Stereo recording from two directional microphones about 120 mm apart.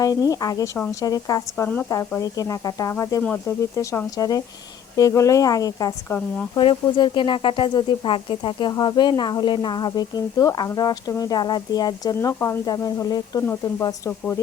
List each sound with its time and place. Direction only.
0.0 s speech: 30° left (ahead or behind)
1.6 s speech: 15° left (ahead or behind)
2.2 s speech: 30° left (ahead or behind)
6.6 s speech: 40° left (ahead or behind)
12.3 s speech: 25° left (ahead or behind)
13.4 s speech: 20° left (ahead or behind)